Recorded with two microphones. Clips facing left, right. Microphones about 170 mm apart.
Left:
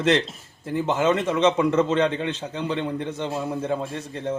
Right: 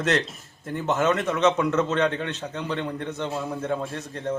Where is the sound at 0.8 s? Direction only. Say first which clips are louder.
Left 1 dB; 30° left (ahead or behind).